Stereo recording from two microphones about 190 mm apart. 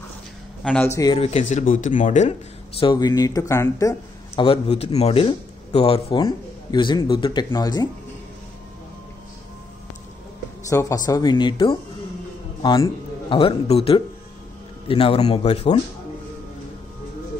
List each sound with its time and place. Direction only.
0.7 s speech: 10° left (ahead or behind)
1.1 s speech: 30° left (ahead or behind)
2.8 s speech: 25° left (ahead or behind)
4.4 s speech: 30° left (ahead or behind)
10.7 s a man's voice: 15° left (ahead or behind)